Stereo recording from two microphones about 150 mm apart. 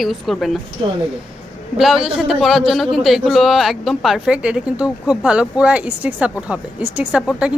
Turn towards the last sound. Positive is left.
turn(degrees=-5)  # may be behind; listen again after turning